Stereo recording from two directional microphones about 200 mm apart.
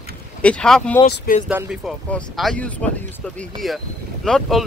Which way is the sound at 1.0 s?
50° left (ahead or behind).